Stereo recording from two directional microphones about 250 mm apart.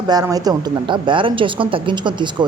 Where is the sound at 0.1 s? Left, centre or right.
Centre.